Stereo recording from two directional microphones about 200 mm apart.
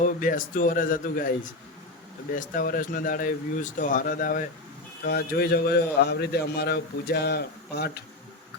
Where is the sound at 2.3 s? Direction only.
45° left (ahead or behind).